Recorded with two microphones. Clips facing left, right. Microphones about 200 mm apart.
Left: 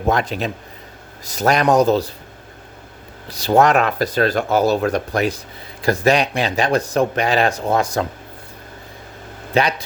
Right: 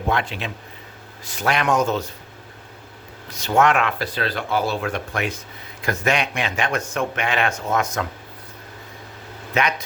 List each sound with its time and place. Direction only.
0.1 s a man's voice: 40° left (ahead or behind)
3.2 s a man's voice: 35° left (ahead or behind)
9.6 s a man's voice: 35° left (ahead or behind)